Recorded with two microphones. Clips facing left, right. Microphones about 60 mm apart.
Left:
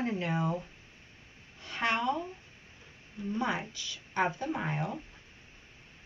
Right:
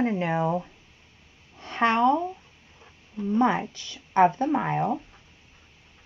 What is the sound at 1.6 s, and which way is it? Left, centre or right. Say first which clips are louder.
Speech: right 9 dB; right.